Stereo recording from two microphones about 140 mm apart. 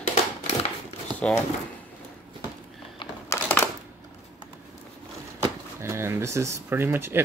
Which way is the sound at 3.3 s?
20° left (ahead or behind).